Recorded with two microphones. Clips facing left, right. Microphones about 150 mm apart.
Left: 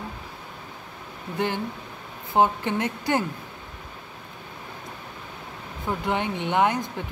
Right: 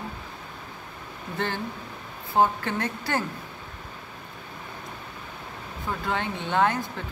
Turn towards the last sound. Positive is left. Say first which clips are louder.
# left 1 dB
turn(degrees=15)  # may be behind; listen again after turning